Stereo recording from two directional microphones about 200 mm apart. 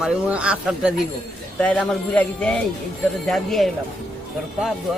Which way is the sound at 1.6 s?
5° left (ahead or behind).